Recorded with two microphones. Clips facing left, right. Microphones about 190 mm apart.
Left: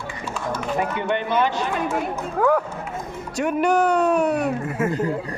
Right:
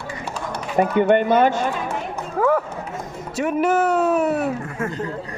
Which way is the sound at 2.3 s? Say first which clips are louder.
Right 1 dB; centre (ahead or behind).